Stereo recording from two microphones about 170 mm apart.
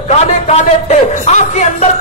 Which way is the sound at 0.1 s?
40° left (ahead or behind).